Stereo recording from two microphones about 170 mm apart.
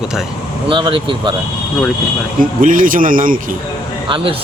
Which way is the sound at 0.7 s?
30° right (ahead or behind).